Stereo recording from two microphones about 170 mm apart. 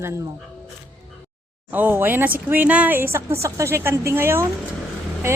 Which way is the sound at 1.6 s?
10° right (ahead or behind).